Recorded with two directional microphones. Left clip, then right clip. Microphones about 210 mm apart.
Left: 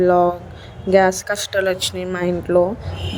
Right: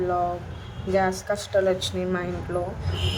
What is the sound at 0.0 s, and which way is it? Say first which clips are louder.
A woman's voice: left 10 dB; 35° left (ahead or behind).